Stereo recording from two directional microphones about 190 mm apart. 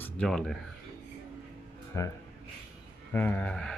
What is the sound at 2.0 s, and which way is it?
Speech, 15° left (ahead or behind).